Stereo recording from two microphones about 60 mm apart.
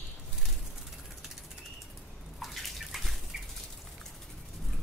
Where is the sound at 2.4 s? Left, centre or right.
Centre.